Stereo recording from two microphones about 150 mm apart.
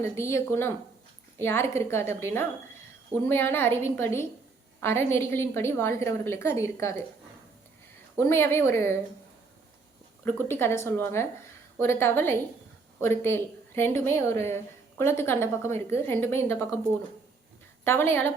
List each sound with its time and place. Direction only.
0.0 s a woman's voice: 20° left (ahead or behind)
8.2 s a woman's voice: 15° left (ahead or behind)
10.2 s a woman's voice: 15° left (ahead or behind)
17.8 s a woman's voice: 15° left (ahead or behind)